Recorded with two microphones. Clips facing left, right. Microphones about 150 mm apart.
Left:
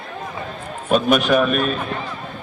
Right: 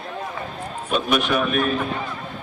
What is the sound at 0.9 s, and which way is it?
Speech, 50° left (ahead or behind).